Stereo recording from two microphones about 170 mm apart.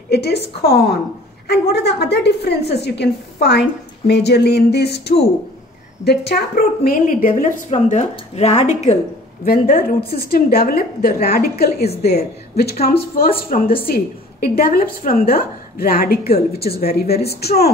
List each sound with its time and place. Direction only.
0.1 s a woman's voice: 70° left (ahead or behind); by 8.9 s 40° left (ahead or behind)
9.4 s a woman's voice: 60° left (ahead or behind)
12.5 s a woman's voice: 65° left (ahead or behind)